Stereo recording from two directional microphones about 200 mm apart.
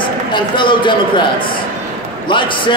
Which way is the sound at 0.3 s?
25° left (ahead or behind).